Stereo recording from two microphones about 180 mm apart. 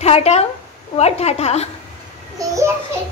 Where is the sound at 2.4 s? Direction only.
15° right (ahead or behind).